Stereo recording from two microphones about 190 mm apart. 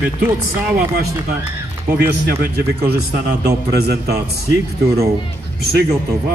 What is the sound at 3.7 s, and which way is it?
Speech, 60° right (ahead or behind).